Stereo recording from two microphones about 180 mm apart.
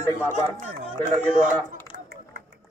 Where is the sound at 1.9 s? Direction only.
50° right (ahead or behind).